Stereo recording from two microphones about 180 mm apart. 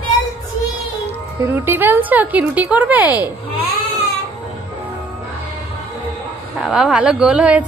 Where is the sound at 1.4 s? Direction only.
10° right (ahead or behind).